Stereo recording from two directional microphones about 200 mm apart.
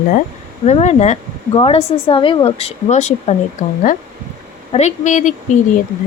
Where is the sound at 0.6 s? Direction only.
35° left (ahead or behind).